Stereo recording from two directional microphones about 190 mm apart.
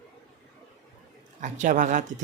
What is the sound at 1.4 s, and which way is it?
Speech, 40° right (ahead or behind).